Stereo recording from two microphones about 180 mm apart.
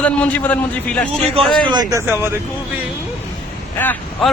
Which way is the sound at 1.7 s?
20° right (ahead or behind).